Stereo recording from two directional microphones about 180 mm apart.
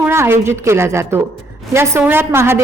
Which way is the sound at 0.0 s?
15° right (ahead or behind).